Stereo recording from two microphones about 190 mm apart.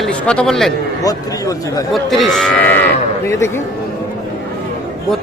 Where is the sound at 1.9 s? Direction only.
Centre (ahead or behind).